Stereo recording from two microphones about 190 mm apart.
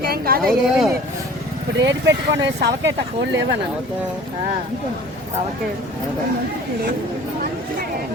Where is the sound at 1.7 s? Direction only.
70° right (ahead or behind).